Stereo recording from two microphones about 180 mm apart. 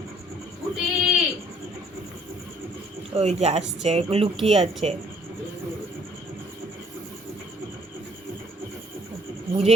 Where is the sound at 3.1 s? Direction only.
35° right (ahead or behind).